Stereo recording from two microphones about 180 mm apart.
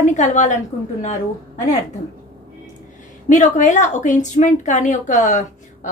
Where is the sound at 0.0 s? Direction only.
40° left (ahead or behind).